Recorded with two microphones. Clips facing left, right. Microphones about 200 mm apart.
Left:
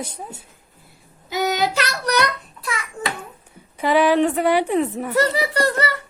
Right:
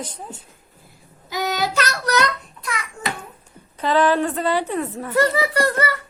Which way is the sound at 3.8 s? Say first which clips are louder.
Left 2 dB; 10° left (ahead or behind).